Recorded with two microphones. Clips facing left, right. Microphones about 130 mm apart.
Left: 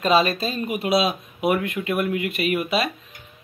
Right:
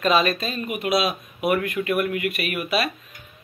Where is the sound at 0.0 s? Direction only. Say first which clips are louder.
Left 1 dB; 30° left (ahead or behind).